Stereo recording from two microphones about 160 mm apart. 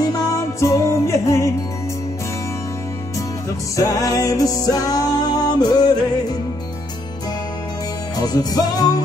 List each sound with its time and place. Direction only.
0.0 s music: 20° left (ahead or behind)
3.7 s music: 20° left (ahead or behind)
8.2 s music: 25° left (ahead or behind)